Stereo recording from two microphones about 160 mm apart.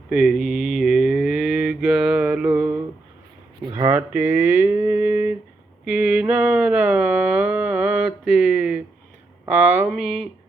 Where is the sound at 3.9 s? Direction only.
10° right (ahead or behind).